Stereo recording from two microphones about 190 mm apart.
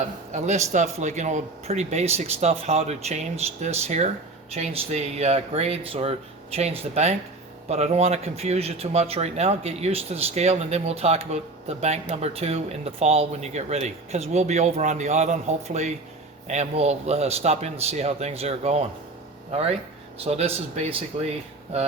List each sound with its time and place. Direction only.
0.3 s speech: 35° right (ahead or behind)
20.1 s speech: 30° right (ahead or behind)